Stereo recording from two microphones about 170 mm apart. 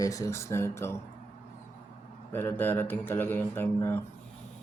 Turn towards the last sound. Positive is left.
turn(degrees=10)  # may be behind; listen again after turning